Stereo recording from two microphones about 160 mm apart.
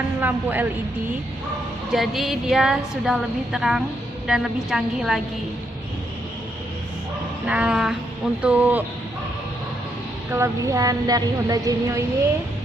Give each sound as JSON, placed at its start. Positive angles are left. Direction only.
{"t": 0.2, "sound": "speech", "side_deg": -10}
{"t": 1.9, "sound": "a woman's voice", "side_deg": 0}
{"t": 7.4, "sound": "speech", "side_deg": -5}
{"t": 10.3, "sound": "a woman's voice", "side_deg": -20}